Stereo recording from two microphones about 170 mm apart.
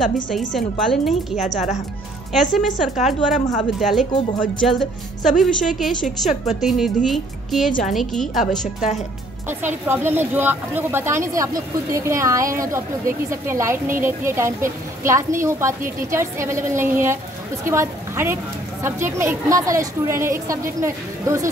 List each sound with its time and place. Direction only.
0.5 s a woman's voice: centre (ahead or behind)
1.3 s a woman's voice: 45° left (ahead or behind)
2.5 s a woman's voice: centre (ahead or behind)
8.5 s a woman's voice: 45° left (ahead or behind)
9.5 s speech: 15° right (ahead or behind)